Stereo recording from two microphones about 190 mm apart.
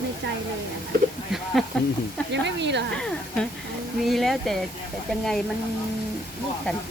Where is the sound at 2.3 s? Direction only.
65° right (ahead or behind).